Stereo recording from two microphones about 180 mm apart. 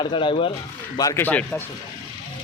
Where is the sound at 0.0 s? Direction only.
25° left (ahead or behind).